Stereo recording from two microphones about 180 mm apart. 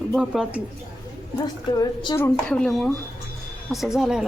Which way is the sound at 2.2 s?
10° left (ahead or behind).